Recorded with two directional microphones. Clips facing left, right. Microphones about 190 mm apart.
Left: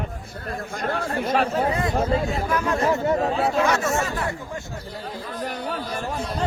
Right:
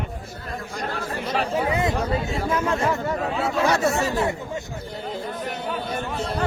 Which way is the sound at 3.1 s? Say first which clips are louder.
Left 3 dB; 35° left (ahead or behind).